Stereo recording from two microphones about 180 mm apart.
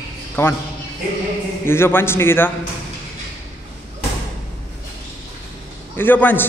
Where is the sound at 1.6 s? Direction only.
15° left (ahead or behind).